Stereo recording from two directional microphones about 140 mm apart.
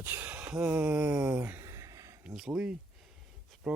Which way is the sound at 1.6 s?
20° right (ahead or behind).